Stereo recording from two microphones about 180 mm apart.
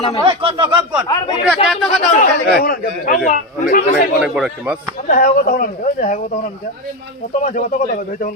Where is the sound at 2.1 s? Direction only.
50° left (ahead or behind).